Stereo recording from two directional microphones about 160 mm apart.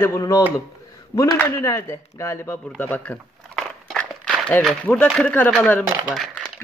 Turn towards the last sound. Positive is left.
turn(degrees=0)  # may be behind; listen again after turning